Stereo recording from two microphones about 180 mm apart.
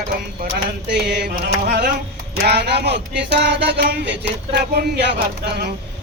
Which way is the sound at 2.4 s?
65° right (ahead or behind).